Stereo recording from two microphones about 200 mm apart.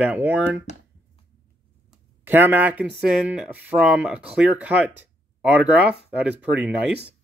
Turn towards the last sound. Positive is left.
turn(degrees=-10)  # may be behind; listen again after turning